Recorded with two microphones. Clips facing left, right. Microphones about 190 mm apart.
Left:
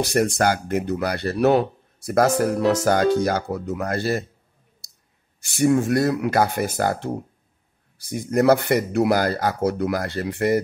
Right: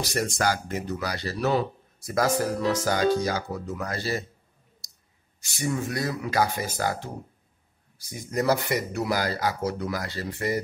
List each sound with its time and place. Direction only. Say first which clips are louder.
0.0 s speech: left 7 dB; 60° left (ahead or behind)
5.4 s speech: left 10 dB; 60° left (ahead or behind)
8.1 s speech: left 7 dB; 60° left (ahead or behind)